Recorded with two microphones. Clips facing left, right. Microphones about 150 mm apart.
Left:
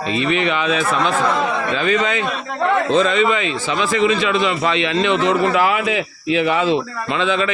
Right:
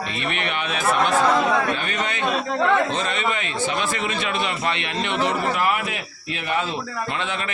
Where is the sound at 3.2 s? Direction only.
90° left.